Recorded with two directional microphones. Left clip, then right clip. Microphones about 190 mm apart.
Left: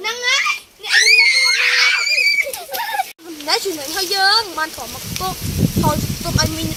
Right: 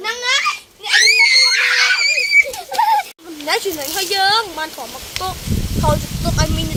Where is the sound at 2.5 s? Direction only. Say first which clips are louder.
Right 7 dB; 40° right (ahead or behind).